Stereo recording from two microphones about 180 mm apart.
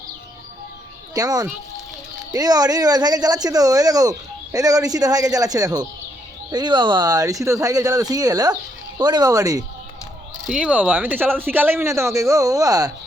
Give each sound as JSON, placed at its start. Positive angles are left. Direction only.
{"t": 1.1, "sound": "speech", "side_deg": -20}
{"t": 10.4, "sound": "speech", "side_deg": -5}